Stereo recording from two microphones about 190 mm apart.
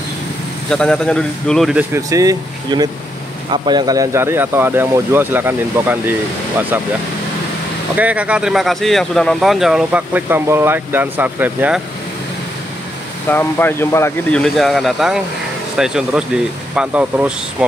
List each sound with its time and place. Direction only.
0.7 s speech: 5° left (ahead or behind)
2.0 s speech: 15° right (ahead or behind)
7.9 s speech: 5° right (ahead or behind)
13.3 s speech: 10° left (ahead or behind)
14.4 s speech: centre (ahead or behind)